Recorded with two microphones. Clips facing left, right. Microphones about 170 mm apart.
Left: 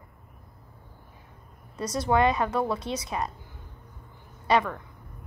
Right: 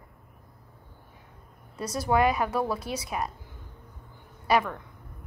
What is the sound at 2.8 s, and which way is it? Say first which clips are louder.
Speech: left 2 dB; 25° left (ahead or behind).